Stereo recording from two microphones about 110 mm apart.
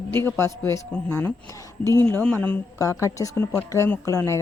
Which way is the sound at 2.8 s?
30° left (ahead or behind).